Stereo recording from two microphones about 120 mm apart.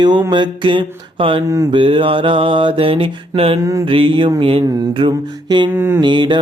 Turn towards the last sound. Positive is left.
turn(degrees=-40)  # may be behind; listen again after turning